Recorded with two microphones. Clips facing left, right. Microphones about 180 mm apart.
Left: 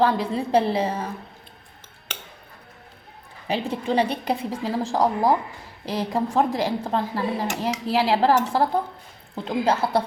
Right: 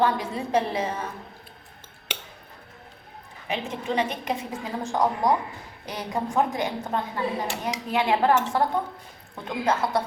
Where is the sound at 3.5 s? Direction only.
35° left (ahead or behind).